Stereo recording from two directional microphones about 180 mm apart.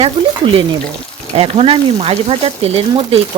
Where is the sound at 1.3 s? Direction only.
35° right (ahead or behind).